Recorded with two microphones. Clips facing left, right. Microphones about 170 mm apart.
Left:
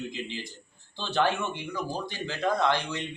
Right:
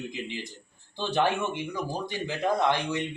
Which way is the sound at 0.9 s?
15° right (ahead or behind).